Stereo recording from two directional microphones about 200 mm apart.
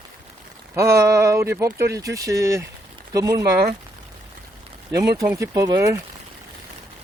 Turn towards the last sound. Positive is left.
turn(degrees=-15)  # may be behind; listen again after turning